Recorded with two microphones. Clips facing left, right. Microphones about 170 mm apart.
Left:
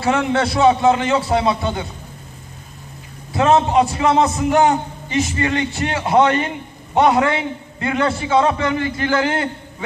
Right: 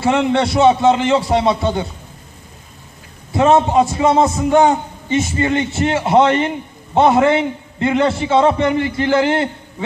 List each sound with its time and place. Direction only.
0.0 s a man's voice: 20° right (ahead or behind)
3.3 s a man's voice: 20° right (ahead or behind)